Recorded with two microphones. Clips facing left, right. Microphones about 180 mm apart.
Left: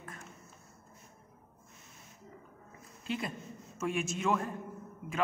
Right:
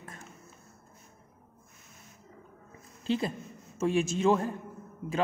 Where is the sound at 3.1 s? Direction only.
30° right (ahead or behind).